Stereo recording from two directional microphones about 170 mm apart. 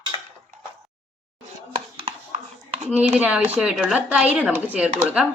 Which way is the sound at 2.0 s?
30° right (ahead or behind).